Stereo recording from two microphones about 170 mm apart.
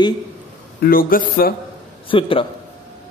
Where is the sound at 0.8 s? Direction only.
60° left (ahead or behind).